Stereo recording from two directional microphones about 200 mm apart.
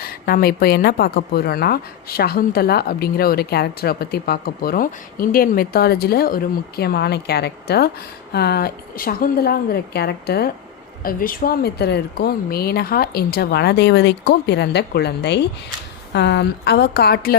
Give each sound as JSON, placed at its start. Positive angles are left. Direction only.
{"t": 0.0, "sound": "speech", "side_deg": 50}